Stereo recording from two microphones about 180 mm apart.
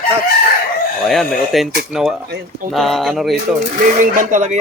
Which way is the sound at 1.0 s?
Centre (ahead or behind).